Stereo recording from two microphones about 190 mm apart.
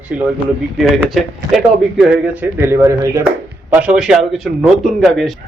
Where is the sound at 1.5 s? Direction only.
5° right (ahead or behind).